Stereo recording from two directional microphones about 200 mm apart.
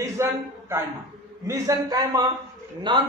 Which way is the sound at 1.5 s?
15° right (ahead or behind).